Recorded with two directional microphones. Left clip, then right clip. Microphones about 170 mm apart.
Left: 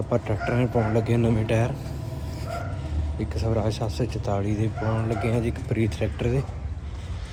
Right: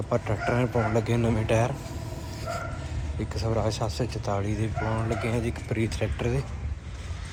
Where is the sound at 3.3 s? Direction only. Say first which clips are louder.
Left 1 dB; 10° left (ahead or behind).